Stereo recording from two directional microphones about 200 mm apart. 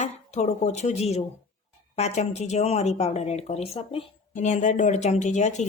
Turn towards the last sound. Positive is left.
turn(degrees=35)  # may be behind; listen again after turning